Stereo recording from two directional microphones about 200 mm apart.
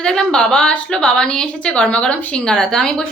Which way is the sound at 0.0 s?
5° left (ahead or behind).